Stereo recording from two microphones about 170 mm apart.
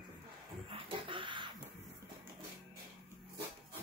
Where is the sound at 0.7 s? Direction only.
30° right (ahead or behind).